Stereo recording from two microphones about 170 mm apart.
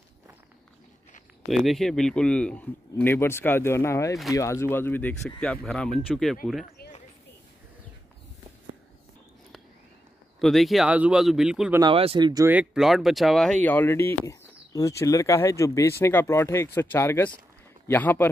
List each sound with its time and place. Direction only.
1.5 s speech: centre (ahead or behind)
10.4 s speech: centre (ahead or behind)
11.8 s speech: 35° right (ahead or behind)
12.4 s speech: 5° right (ahead or behind); by 18.3 s 10° left (ahead or behind)